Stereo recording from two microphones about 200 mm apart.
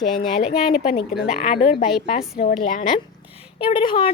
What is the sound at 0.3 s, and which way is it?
Speech, 30° left (ahead or behind).